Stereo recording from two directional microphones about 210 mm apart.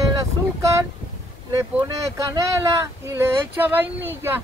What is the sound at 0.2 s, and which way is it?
Boat, 15° right (ahead or behind).